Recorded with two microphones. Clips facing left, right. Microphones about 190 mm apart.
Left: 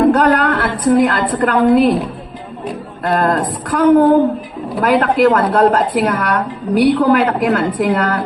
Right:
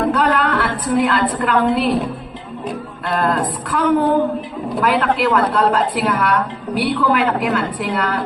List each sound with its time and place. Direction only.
0.1 s a woman's voice: 45° left (ahead or behind)
3.0 s a woman's voice: 45° left (ahead or behind)